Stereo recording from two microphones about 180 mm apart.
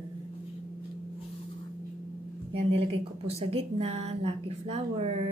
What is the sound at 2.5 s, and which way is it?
A woman's voice, 35° right (ahead or behind).